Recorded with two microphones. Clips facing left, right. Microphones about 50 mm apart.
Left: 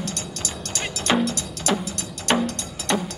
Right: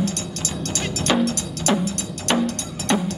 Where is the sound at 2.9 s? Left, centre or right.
Centre.